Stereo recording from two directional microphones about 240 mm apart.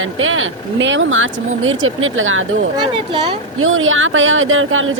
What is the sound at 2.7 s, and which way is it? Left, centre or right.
Speech, centre.